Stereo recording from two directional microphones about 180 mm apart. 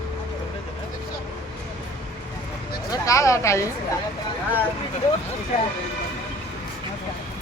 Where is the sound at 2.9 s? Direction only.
20° left (ahead or behind).